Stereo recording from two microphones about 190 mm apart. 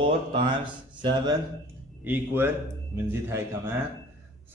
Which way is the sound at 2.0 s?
10° right (ahead or behind).